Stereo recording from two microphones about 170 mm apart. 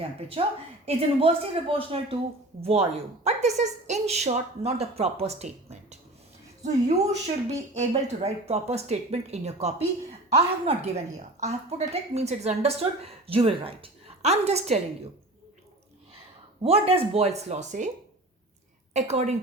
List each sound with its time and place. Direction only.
0.4 s speech: 35° right (ahead or behind)
6.6 s a woman's voice: 45° right (ahead or behind)
16.6 s speech: 35° right (ahead or behind)
18.9 s speech: 40° right (ahead or behind)